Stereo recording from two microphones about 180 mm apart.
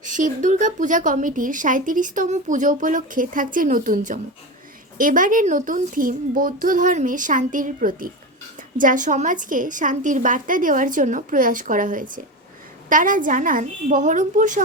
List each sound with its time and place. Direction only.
0.0 s speech: 45° right (ahead or behind)